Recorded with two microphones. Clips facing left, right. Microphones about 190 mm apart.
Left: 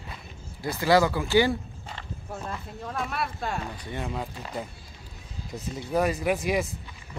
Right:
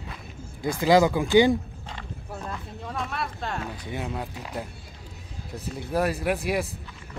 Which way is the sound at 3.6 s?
5° right (ahead or behind).